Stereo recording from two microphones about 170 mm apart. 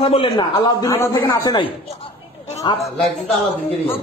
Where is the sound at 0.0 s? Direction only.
35° left (ahead or behind); by 1.6 s 20° left (ahead or behind).